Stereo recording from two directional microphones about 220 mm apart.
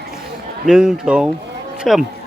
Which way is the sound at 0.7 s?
5° right (ahead or behind).